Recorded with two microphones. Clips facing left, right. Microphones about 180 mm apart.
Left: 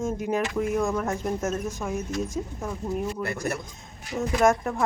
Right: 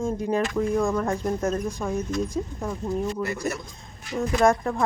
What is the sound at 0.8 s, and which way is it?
Speech, 5° left (ahead or behind).